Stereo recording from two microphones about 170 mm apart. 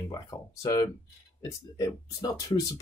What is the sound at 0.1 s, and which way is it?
Speech, 20° left (ahead or behind).